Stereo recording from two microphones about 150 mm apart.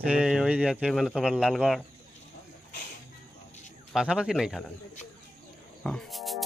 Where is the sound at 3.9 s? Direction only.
5° right (ahead or behind).